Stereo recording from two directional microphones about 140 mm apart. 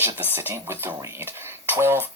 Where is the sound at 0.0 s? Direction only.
15° right (ahead or behind).